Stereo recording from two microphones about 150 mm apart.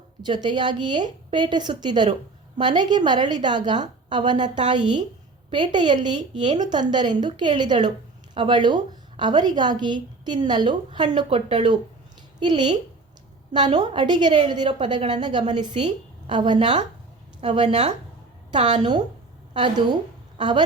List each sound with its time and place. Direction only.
0.2 s a woman's voice: 30° right (ahead or behind)
15.7 s a woman's voice: 45° right (ahead or behind)
16.3 s a woman's voice: 30° right (ahead or behind)